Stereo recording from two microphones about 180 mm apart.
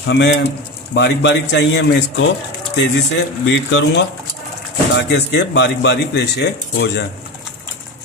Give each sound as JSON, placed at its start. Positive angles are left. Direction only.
{"t": 0.0, "sound": "speech", "side_deg": 80}
{"t": 4.9, "sound": "speech", "side_deg": 75}